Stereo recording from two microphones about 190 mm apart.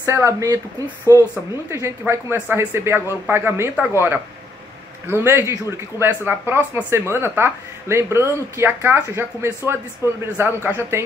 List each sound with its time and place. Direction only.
0.0 s speech: 15° right (ahead or behind)